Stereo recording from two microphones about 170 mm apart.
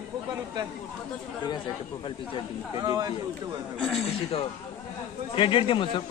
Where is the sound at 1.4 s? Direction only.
25° left (ahead or behind).